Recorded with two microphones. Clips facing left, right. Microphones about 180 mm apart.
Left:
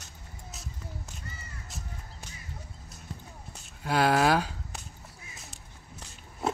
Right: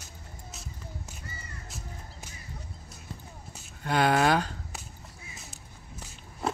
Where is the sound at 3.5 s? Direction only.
5° left (ahead or behind).